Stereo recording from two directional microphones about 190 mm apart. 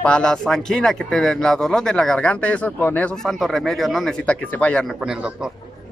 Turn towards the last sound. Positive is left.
turn(degrees=-5)  # may be behind; listen again after turning